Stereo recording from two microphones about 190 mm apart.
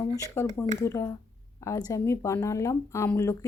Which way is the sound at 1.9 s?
15° left (ahead or behind).